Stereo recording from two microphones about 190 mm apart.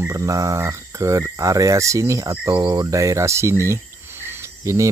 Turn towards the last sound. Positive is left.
turn(degrees=-15)  # may be behind; listen again after turning